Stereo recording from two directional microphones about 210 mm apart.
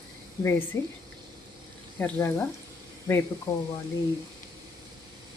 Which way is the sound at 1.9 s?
10° left (ahead or behind).